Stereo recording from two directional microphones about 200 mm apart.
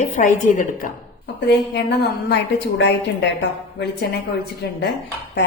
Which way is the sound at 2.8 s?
60° left (ahead or behind).